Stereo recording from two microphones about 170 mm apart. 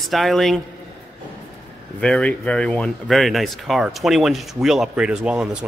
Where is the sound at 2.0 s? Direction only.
5° left (ahead or behind).